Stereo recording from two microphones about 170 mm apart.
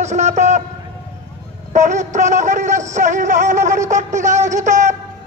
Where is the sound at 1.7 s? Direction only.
45° right (ahead or behind).